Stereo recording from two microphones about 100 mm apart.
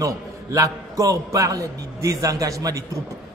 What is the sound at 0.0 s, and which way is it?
A man's voice, 35° right (ahead or behind).